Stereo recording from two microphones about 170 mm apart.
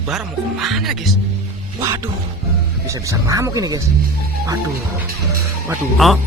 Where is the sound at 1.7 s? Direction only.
20° right (ahead or behind).